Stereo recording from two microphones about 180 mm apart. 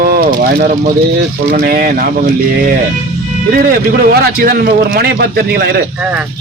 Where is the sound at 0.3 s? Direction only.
50° right (ahead or behind).